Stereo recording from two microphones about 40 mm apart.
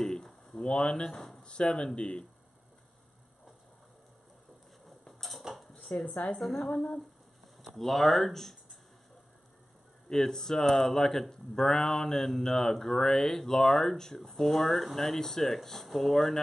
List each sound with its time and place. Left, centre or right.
0.0 s a sound: centre
0.6 s speech: left
1.1 s speech: centre
1.4 s speech: left
5.0 s tick-tock: centre
5.7 s a sound: left
6.3 s speech: centre
10.0 s speech: centre